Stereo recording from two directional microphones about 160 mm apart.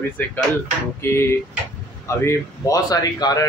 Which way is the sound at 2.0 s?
20° left (ahead or behind).